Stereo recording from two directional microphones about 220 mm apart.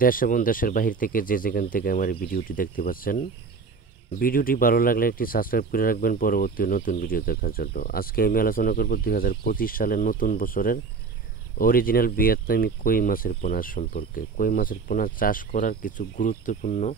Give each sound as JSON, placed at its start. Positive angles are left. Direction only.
{"t": 0.0, "sound": "speech", "side_deg": 40}